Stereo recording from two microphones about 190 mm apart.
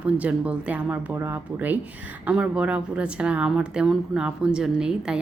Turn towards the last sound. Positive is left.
turn(degrees=-5)  # may be behind; listen again after turning